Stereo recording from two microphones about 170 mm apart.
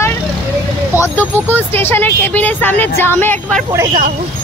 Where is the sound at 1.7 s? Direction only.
15° left (ahead or behind).